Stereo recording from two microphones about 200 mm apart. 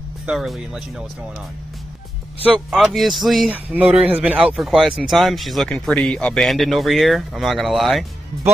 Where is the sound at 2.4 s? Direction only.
5° right (ahead or behind).